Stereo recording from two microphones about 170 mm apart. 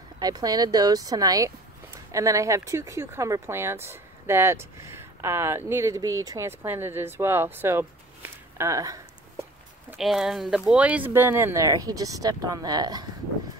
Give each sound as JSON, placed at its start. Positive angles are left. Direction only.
{"t": 0.2, "sound": "speech", "side_deg": -20}
{"t": 9.9, "sound": "speech", "side_deg": 0}